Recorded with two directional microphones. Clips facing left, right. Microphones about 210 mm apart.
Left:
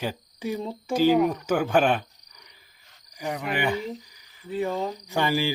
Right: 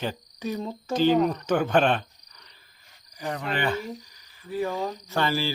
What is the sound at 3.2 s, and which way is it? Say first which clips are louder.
Cricket: left 1 dB; 15° left (ahead or behind).